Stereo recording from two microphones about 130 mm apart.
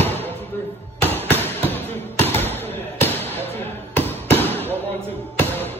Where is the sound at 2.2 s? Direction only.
15° left (ahead or behind).